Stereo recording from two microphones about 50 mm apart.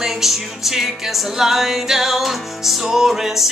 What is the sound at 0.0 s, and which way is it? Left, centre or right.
Music, centre.